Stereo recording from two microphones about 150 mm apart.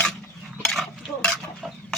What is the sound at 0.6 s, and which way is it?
Stir, centre (ahead or behind).